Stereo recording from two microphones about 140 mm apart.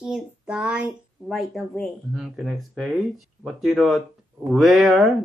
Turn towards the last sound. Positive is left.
turn(degrees=0)  # may be behind; listen again after turning